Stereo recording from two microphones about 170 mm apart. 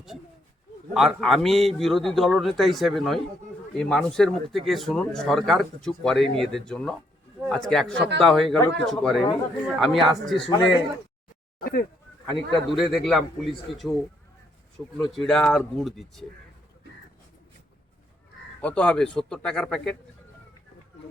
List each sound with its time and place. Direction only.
0.9 s a man's voice: centre (ahead or behind)
10.3 s a man's voice: 30° left (ahead or behind)
11.6 s speech: 65° left (ahead or behind)
12.2 s a man's voice: centre (ahead or behind)
14.9 s a man's voice: centre (ahead or behind)
18.6 s a man's voice: 5° left (ahead or behind)